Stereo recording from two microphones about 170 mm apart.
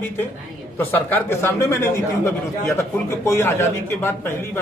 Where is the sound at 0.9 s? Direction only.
10° left (ahead or behind).